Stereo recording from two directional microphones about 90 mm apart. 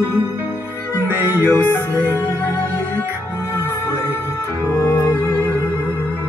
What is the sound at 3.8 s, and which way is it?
Music, 30° left (ahead or behind).